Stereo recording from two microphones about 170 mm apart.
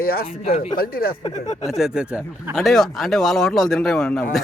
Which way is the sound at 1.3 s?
45° left (ahead or behind).